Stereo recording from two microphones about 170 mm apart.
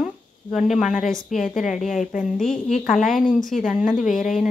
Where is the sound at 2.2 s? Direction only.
Centre (ahead or behind).